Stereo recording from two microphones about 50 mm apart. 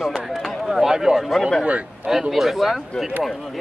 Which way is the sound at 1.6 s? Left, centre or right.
Right.